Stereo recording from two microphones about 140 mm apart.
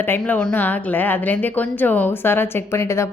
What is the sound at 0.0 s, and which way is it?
A woman's voice, 15° left (ahead or behind).